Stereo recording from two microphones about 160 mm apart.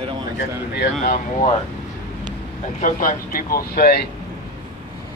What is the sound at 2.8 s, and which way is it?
Speech, 55° left (ahead or behind).